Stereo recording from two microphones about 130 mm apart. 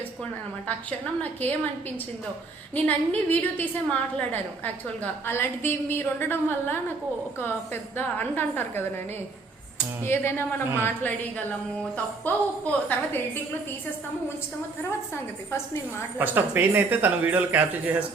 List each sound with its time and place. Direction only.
0.7 s a woman's voice: 15° left (ahead or behind)
2.7 s a woman's voice: 10° left (ahead or behind)
15.1 s a woman's voice: 20° left (ahead or behind)
16.1 s speech: 15° right (ahead or behind)